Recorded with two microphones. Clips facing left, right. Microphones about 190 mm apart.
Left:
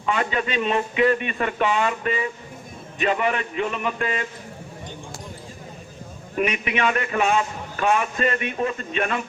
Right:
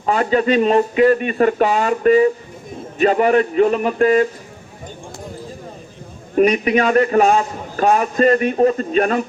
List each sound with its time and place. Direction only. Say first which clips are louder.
0.0 s a man's voice: right 8 dB; 40° right (ahead or behind)
6.3 s a man's voice: right 10 dB; 40° right (ahead or behind)